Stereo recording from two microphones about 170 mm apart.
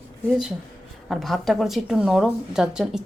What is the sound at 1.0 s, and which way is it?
A woman's voice, centre (ahead or behind).